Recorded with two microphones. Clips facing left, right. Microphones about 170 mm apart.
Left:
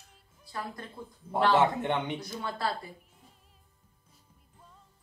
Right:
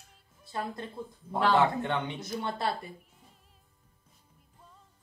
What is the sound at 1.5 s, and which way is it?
Speech, 20° left (ahead or behind).